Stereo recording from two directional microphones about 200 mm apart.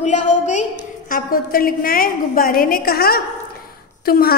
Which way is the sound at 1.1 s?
45° left (ahead or behind).